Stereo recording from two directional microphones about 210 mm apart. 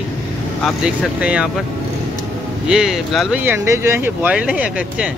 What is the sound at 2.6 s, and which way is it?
Speech, centre (ahead or behind).